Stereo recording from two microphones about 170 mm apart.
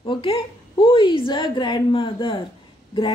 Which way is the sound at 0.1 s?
30° left (ahead or behind).